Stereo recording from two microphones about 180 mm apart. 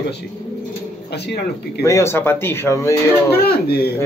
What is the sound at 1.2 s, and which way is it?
Speech, 65° left (ahead or behind).